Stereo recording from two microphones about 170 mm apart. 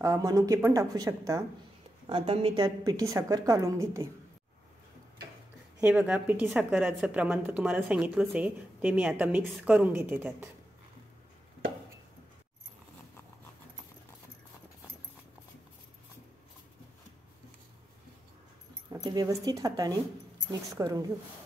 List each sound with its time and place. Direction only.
0.0 s speech: 20° right (ahead or behind)
2.0 s speech: 30° right (ahead or behind)
2.8 s speech: 20° right (ahead or behind)
5.8 s a woman's voice: 10° right (ahead or behind)
18.9 s speech: 20° right (ahead or behind)